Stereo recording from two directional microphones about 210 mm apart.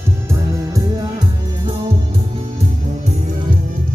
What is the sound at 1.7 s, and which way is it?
Music, 25° right (ahead or behind).